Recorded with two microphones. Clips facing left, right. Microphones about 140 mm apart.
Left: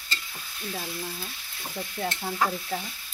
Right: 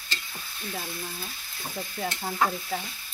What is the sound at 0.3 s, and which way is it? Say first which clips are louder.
Speech: even; centre (ahead or behind).